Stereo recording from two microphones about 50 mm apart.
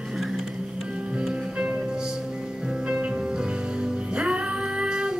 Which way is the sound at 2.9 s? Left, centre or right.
Centre.